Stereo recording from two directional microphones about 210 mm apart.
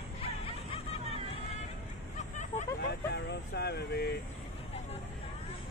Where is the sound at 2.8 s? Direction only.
50° left (ahead or behind).